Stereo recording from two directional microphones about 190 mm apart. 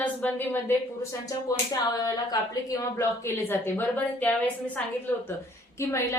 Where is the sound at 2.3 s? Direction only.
20° left (ahead or behind).